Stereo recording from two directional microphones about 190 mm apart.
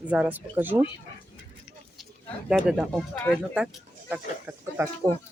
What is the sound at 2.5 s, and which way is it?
Speech, 5° right (ahead or behind).